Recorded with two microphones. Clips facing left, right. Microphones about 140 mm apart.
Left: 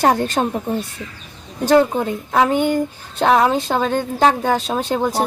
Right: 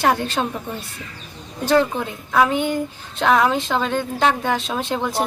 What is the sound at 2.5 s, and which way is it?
Speech, 45° left (ahead or behind).